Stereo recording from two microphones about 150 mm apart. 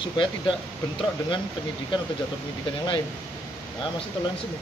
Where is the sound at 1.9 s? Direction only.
35° left (ahead or behind).